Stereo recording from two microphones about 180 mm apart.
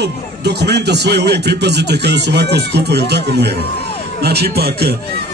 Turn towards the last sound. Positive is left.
turn(degrees=-60)  # may be behind; listen again after turning